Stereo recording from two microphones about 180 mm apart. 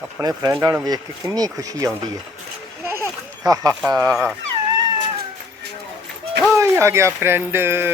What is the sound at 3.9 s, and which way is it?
Speech, 15° right (ahead or behind).